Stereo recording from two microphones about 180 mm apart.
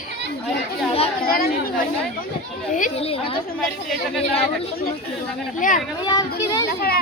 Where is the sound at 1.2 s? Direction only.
55° left (ahead or behind).